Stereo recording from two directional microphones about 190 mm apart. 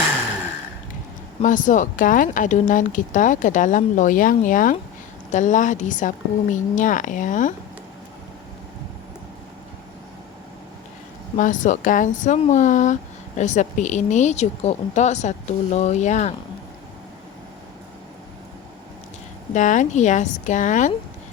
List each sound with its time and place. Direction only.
1.4 s speech: 40° left (ahead or behind)
11.3 s speech: 45° left (ahead or behind)
19.5 s speech: 40° left (ahead or behind)